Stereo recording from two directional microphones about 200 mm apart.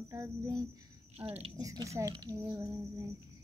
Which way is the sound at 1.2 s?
30° right (ahead or behind).